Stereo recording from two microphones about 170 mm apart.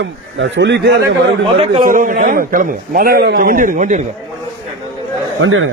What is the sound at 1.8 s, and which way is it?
A man's voice, 50° right (ahead or behind).